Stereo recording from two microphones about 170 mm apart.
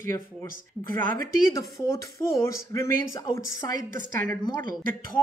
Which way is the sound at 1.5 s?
20° left (ahead or behind).